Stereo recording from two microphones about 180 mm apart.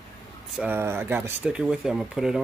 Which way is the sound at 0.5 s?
10° right (ahead or behind).